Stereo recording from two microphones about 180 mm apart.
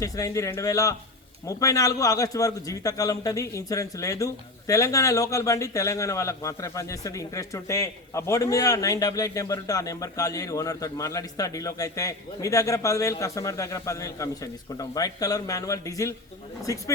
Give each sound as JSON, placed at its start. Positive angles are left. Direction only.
{"t": 0.0, "sound": "a man's voice", "side_deg": 20}